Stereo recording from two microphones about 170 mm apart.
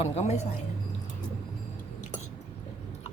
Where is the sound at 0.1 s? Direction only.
40° left (ahead or behind).